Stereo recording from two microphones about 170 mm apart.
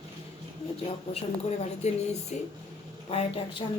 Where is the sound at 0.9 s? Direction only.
40° left (ahead or behind).